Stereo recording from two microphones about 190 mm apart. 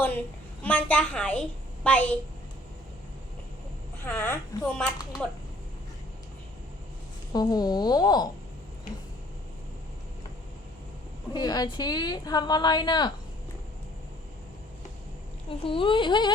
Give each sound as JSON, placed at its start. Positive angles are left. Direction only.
{"t": 0.0, "sound": "a woman's voice", "side_deg": 10}
{"t": 4.0, "sound": "speech", "side_deg": 10}
{"t": 7.3, "sound": "a woman's voice", "side_deg": 20}
{"t": 11.3, "sound": "a woman's voice", "side_deg": 20}
{"t": 15.4, "sound": "a woman's voice", "side_deg": 25}